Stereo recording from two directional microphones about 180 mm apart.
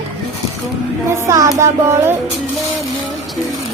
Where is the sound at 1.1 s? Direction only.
15° right (ahead or behind).